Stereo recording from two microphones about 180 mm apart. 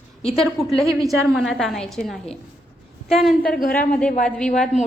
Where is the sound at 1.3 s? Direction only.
Centre (ahead or behind).